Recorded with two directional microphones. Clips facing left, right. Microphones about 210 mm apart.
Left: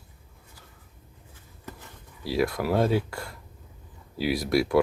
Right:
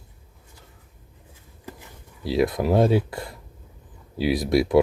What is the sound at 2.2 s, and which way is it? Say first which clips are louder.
Speech: right 4 dB; 20° right (ahead or behind).